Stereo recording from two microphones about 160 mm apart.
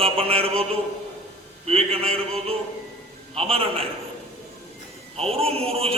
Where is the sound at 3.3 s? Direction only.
40° right (ahead or behind).